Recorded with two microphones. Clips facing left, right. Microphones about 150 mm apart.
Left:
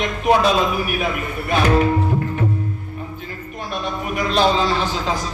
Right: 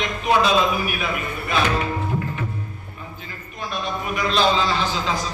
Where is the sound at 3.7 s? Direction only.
50° left (ahead or behind).